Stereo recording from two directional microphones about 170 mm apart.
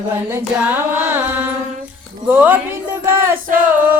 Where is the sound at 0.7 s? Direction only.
10° right (ahead or behind).